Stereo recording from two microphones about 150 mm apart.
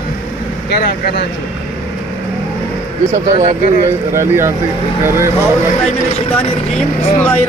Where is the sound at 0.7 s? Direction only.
90° left.